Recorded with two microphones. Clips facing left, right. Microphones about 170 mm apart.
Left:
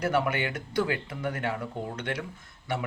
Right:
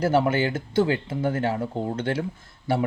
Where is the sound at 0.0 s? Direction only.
30° right (ahead or behind).